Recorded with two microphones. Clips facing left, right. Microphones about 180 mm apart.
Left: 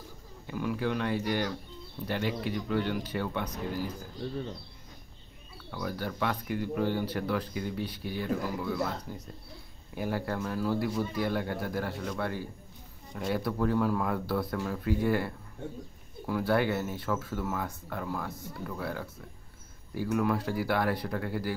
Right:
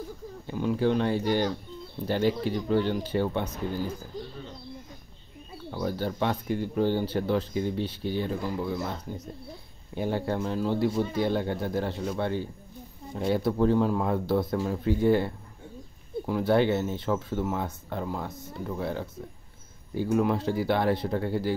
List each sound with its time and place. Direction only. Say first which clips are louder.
0.5 s speech: right 6 dB; 30° right (ahead or behind)
5.7 s speech: right 5 dB; 30° right (ahead or behind)